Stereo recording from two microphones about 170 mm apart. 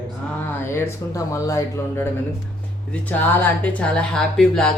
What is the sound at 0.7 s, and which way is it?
Speech, 15° left (ahead or behind).